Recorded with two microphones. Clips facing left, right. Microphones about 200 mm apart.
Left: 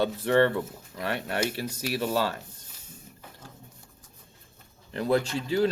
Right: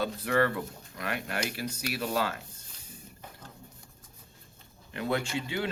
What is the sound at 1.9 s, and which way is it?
Speech, 35° left (ahead or behind).